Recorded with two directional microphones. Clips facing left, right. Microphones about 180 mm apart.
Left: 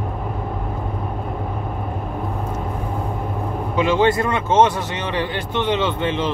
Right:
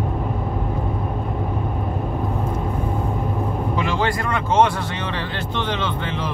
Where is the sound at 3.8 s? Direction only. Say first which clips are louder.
Left 10 dB; 20° left (ahead or behind).